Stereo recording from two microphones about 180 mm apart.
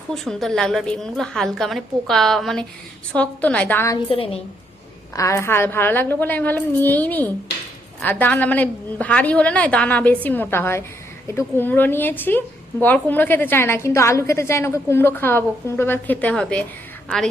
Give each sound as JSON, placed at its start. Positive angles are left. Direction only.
{"t": 0.1, "sound": "a woman's voice", "side_deg": 0}
{"t": 4.1, "sound": "a woman's voice", "side_deg": 30}
{"t": 5.1, "sound": "a woman's voice", "side_deg": 15}